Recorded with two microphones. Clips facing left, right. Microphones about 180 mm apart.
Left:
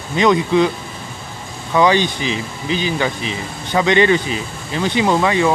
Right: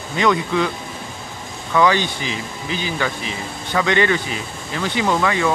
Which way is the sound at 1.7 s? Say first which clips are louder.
Left 3 dB; 20° left (ahead or behind).